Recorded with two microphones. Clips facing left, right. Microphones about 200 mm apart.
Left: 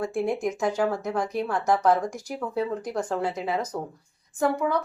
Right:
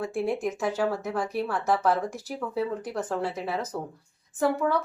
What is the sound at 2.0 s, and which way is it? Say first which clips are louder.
Speech: left 1 dB; 15° left (ahead or behind).